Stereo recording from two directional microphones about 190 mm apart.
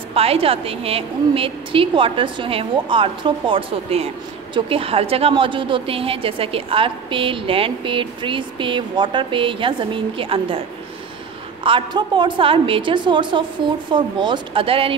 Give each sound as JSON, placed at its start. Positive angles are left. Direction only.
{"t": 0.1, "sound": "a woman's voice", "side_deg": -30}
{"t": 11.6, "sound": "a woman's voice", "side_deg": -25}